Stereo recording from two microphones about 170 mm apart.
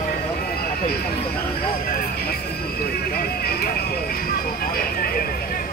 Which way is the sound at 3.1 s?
65° left (ahead or behind).